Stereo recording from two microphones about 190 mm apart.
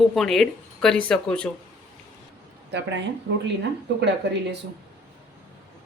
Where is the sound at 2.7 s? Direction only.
65° right (ahead or behind).